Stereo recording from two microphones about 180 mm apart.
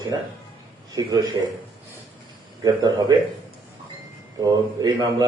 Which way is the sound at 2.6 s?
20° right (ahead or behind).